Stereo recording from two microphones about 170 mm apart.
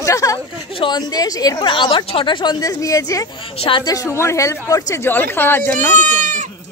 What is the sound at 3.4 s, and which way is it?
Speech, 35° left (ahead or behind).